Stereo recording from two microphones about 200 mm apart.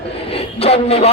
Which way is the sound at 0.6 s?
30° left (ahead or behind).